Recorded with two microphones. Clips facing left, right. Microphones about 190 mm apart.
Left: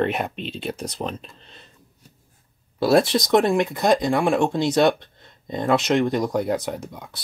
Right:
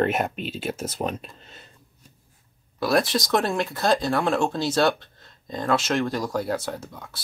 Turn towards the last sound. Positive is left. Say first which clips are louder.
# left 3 dB
turn(degrees=15)  # may be behind; listen again after turning